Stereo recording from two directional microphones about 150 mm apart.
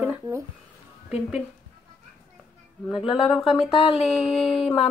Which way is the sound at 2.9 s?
Centre (ahead or behind).